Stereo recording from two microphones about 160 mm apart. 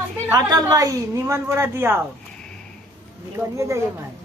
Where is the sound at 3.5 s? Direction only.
20° right (ahead or behind).